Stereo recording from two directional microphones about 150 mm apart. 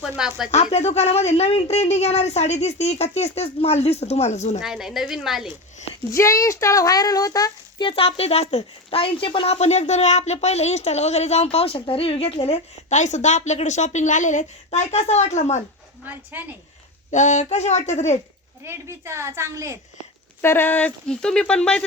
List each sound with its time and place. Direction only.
0.2 s a woman's voice: 5° right (ahead or behind)
0.5 s speech: 45° left (ahead or behind)
4.6 s a woman's voice: 5° right (ahead or behind)
6.1 s speech: 20° left (ahead or behind); by 15.6 s 50° left (ahead or behind)
16.0 s a woman's voice: 10° right (ahead or behind)
17.1 s speech: 55° left (ahead or behind)
18.6 s a woman's voice: 15° right (ahead or behind)
20.4 s speech: 15° left (ahead or behind)